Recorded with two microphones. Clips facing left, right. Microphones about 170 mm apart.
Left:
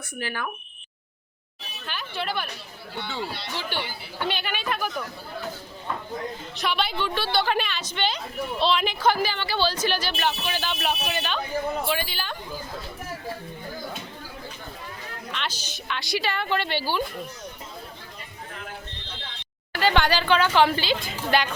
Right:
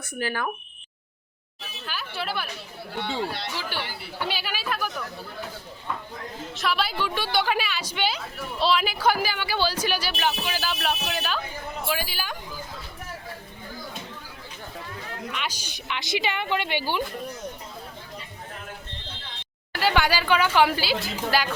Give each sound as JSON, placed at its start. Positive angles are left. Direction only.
{"t": 0.2, "sound": "speech", "side_deg": -40}
{"t": 1.9, "sound": "speech", "side_deg": -5}
{"t": 3.5, "sound": "speech", "side_deg": -5}
{"t": 6.5, "sound": "a woman's voice", "side_deg": 0}
{"t": 15.3, "sound": "a woman's voice", "side_deg": -10}
{"t": 19.8, "sound": "a woman's voice", "side_deg": -10}